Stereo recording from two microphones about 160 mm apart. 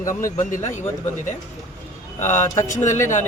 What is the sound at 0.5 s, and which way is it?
Speech, 50° left (ahead or behind).